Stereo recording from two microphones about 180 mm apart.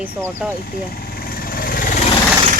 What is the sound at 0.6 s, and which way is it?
Vehicle, 55° left (ahead or behind).